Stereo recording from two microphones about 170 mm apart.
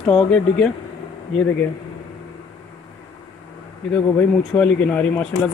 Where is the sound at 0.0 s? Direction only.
5° left (ahead or behind).